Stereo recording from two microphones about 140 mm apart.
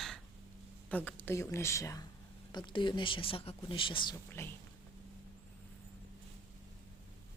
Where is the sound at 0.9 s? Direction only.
10° left (ahead or behind).